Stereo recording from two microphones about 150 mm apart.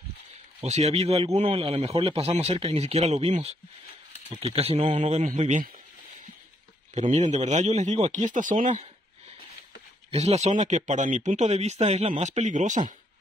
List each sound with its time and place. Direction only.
0.6 s a man's voice: 45° right (ahead or behind)
6.9 s a man's voice: 50° right (ahead or behind)
10.1 s a man's voice: 45° right (ahead or behind)